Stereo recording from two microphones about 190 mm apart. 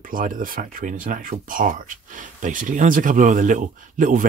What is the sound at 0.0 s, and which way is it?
Speech, 45° right (ahead or behind).